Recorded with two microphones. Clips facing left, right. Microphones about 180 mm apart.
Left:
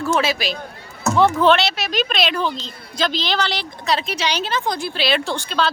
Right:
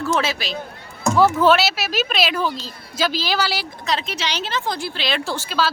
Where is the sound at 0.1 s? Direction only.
15° left (ahead or behind).